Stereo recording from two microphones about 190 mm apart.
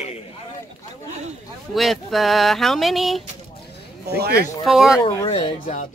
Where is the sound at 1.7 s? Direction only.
Centre (ahead or behind).